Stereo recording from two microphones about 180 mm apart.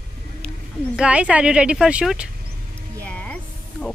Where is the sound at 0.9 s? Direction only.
5° right (ahead or behind).